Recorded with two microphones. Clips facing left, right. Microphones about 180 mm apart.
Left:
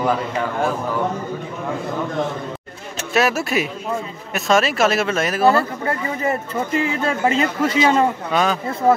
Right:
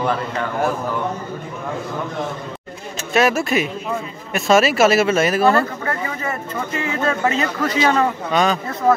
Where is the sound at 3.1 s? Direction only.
5° left (ahead or behind).